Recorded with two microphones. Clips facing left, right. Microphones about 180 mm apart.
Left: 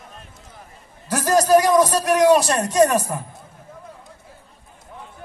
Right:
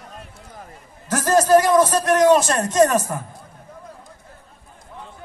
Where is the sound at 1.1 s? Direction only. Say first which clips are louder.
Right 1 dB; 15° left (ahead or behind).